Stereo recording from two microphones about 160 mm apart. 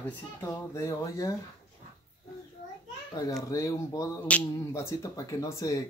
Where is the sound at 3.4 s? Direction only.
20° left (ahead or behind).